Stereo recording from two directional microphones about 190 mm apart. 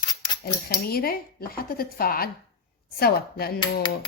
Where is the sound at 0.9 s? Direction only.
55° left (ahead or behind).